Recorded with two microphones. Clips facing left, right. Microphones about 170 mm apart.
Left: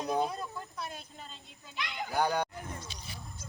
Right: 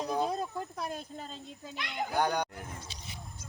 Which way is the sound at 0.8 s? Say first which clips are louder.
Right 5 dB; 45° right (ahead or behind).